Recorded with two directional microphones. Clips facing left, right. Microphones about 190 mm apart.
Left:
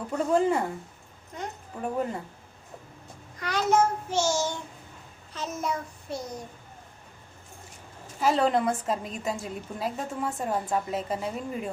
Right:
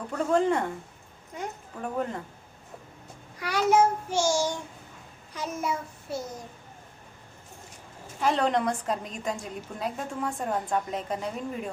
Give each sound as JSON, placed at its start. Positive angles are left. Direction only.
{"t": 0.1, "sound": "speech", "side_deg": 5}
{"t": 1.4, "sound": "child singing", "side_deg": -10}
{"t": 3.3, "sound": "child singing", "side_deg": -10}
{"t": 8.2, "sound": "a woman's voice", "side_deg": 5}